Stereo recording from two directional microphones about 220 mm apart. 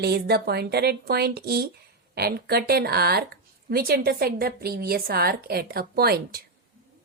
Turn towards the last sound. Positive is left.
turn(degrees=-45)  # may be behind; listen again after turning